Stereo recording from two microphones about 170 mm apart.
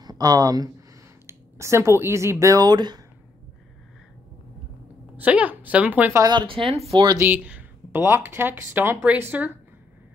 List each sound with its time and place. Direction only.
0.0 s speech: 20° right (ahead or behind)
5.1 s speech: 10° right (ahead or behind)
6.2 s speech: 30° right (ahead or behind)
7.1 s speech: 10° right (ahead or behind)